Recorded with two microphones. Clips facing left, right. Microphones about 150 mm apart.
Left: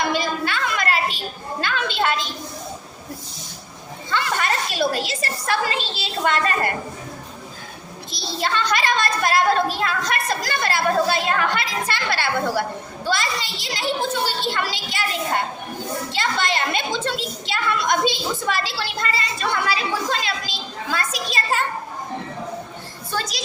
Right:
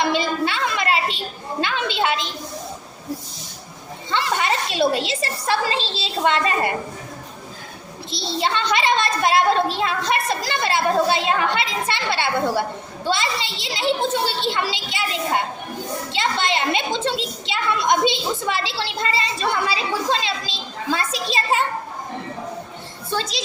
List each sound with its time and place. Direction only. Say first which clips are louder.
0.0 s a woman's voice: right 2 dB; 25° right (ahead or behind)
1.6 s a sound: even; 20° right (ahead or behind)
4.1 s a sound: right 1 dB; 20° right (ahead or behind)
4.9 s a woman's voice: right 2 dB; 25° right (ahead or behind)
8.1 s a woman's voice: right 2 dB; 25° right (ahead or behind)
16.1 s a woman's voice: right 2 dB; 25° right (ahead or behind)
23.1 s a woman's voice: right 2 dB; 25° right (ahead or behind)